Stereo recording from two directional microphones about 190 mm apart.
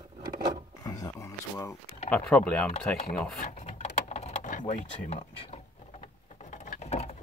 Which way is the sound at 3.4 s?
35° left (ahead or behind).